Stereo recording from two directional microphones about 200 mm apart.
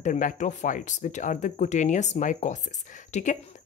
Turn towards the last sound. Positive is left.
turn(degrees=40)  # may be behind; listen again after turning